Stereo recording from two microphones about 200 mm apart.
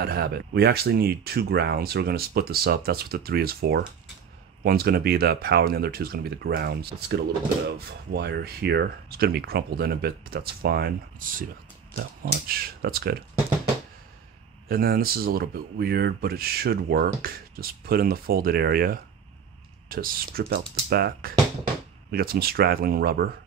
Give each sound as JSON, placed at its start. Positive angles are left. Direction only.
{"t": 0.0, "sound": "speech", "side_deg": -50}
{"t": 14.7, "sound": "speech", "side_deg": -50}